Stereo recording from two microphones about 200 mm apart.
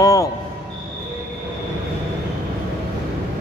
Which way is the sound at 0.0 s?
15° left (ahead or behind).